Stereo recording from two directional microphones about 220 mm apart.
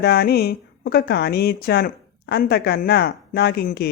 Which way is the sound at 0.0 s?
45° left (ahead or behind).